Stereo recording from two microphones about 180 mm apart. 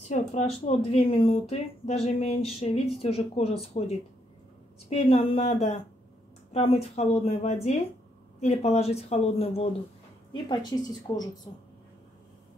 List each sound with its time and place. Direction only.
0.1 s speech: 40° left (ahead or behind)
4.8 s speech: 35° left (ahead or behind)
10.3 s a woman's voice: 20° left (ahead or behind)